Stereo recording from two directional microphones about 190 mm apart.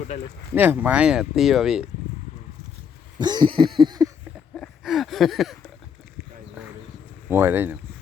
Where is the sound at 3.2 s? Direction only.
20° right (ahead or behind).